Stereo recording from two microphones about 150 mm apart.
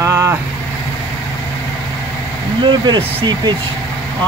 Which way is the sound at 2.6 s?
30° right (ahead or behind).